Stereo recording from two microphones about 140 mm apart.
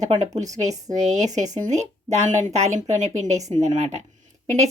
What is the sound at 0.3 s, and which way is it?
Speech, 55° right (ahead or behind).